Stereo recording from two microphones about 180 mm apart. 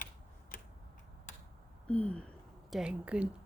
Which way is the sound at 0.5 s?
50° left (ahead or behind).